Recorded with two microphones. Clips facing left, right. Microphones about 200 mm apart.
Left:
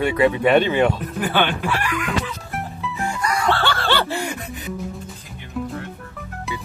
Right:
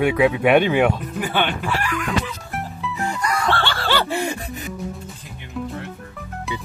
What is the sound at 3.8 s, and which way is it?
Snicker, 10° right (ahead or behind).